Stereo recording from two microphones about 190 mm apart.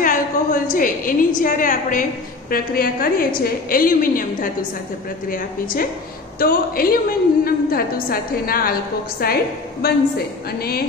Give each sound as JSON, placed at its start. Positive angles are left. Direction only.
{"t": 0.0, "sound": "a woman's voice", "side_deg": 45}